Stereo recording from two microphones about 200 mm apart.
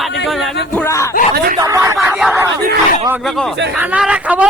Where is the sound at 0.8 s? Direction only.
15° left (ahead or behind).